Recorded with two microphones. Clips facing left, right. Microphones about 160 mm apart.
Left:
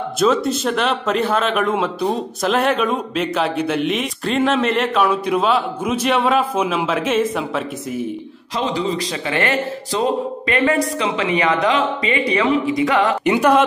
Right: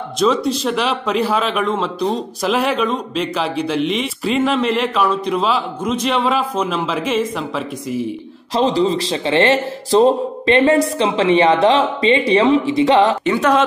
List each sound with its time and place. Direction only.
0.2 s speech: 5° left (ahead or behind)
8.5 s a man's voice: 30° right (ahead or behind)
13.2 s speech: 10° left (ahead or behind)